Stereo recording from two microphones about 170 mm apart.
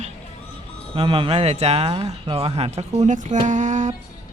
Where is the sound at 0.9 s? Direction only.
30° right (ahead or behind).